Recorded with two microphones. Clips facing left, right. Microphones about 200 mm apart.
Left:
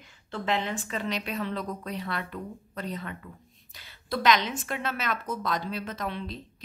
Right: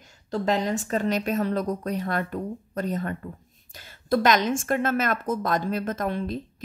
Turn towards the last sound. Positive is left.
turn(degrees=-50)  # may be behind; listen again after turning